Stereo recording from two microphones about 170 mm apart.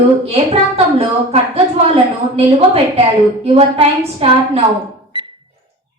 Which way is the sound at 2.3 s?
35° right (ahead or behind).